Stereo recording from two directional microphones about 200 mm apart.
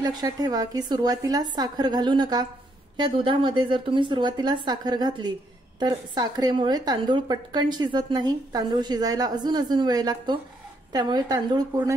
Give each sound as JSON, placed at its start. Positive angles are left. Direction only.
{"t": 0.0, "sound": "a woman's voice", "side_deg": -20}